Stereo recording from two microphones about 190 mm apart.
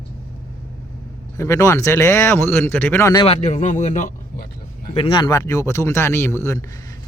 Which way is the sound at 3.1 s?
30° left (ahead or behind).